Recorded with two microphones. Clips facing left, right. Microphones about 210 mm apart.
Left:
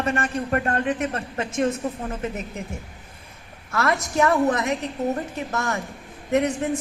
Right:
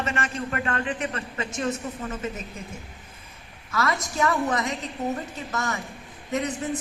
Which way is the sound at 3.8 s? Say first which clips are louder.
Left 4 dB; 65° left (ahead or behind).